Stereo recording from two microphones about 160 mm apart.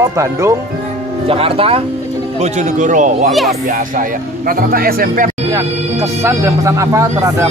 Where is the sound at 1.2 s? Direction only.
35° right (ahead or behind).